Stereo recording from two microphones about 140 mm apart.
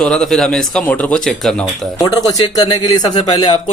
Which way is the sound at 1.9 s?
25° left (ahead or behind).